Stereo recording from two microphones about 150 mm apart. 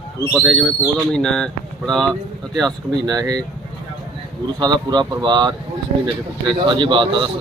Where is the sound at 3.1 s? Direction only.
25° right (ahead or behind).